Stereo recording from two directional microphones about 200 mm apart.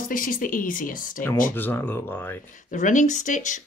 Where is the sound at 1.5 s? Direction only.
10° left (ahead or behind).